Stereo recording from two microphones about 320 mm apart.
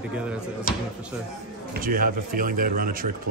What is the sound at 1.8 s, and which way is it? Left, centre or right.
Speech, right.